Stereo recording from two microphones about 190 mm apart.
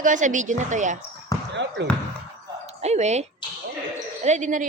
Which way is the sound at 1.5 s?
70° right (ahead or behind).